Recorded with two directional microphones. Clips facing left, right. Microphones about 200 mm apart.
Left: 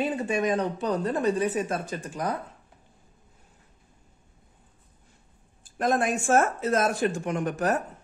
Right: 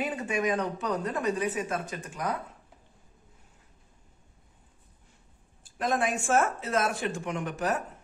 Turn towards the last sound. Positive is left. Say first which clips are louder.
# left 4 dB
turn(degrees=45)  # may be behind; listen again after turning